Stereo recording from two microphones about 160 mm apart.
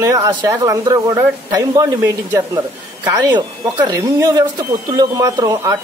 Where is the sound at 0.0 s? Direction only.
20° right (ahead or behind).